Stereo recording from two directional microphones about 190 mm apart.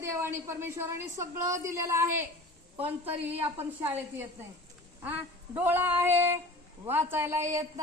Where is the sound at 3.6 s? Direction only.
10° right (ahead or behind).